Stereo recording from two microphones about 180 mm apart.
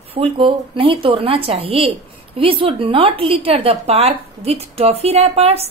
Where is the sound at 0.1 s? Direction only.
30° right (ahead or behind).